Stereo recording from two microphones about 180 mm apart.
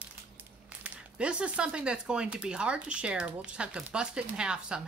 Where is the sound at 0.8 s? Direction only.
5° right (ahead or behind).